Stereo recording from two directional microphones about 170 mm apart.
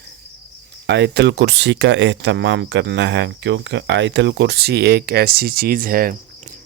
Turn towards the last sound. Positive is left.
turn(degrees=-55)  # may be behind; listen again after turning